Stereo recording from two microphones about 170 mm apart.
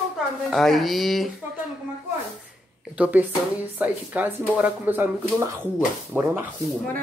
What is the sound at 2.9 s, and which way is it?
Speech, 5° right (ahead or behind).